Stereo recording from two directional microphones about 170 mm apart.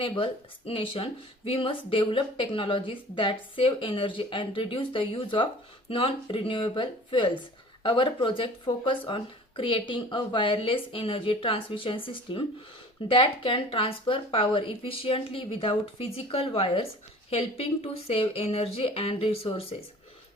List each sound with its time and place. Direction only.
0.0 s speech: 30° left (ahead or behind)